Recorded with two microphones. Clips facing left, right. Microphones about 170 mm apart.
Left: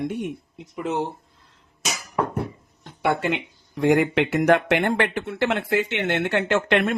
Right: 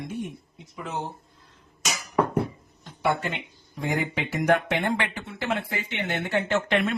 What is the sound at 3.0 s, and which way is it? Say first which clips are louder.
Speech: left 4 dB; 85° left.